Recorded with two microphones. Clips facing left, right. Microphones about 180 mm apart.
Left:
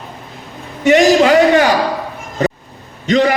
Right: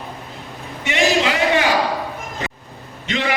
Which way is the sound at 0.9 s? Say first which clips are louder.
Left 10 dB; 45° left (ahead or behind).